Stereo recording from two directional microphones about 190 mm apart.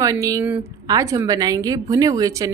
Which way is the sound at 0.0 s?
15° right (ahead or behind).